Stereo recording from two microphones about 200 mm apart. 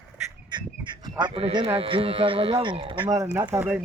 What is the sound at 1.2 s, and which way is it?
Speech, 25° right (ahead or behind).